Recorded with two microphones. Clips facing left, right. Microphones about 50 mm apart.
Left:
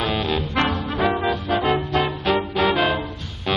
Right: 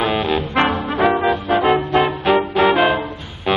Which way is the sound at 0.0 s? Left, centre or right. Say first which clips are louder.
Right 4 dB; centre.